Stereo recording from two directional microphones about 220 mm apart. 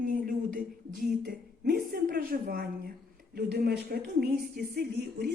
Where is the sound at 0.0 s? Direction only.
40° right (ahead or behind).